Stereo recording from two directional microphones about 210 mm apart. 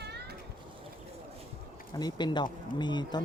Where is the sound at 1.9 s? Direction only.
20° left (ahead or behind).